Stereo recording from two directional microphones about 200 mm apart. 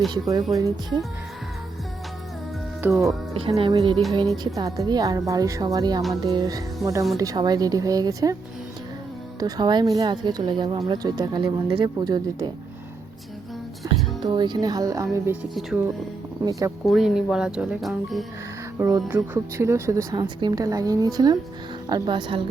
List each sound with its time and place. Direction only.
0.1 s speech: 20° right (ahead or behind)
2.8 s speech: 5° right (ahead or behind)
3.5 s speech: 25° right (ahead or behind)
9.4 s speech: 20° right (ahead or behind)
13.8 s speech: 20° right (ahead or behind)
16.4 s speech: 15° right (ahead or behind)
16.8 s speech: centre (ahead or behind)
18.8 s speech: 15° right (ahead or behind)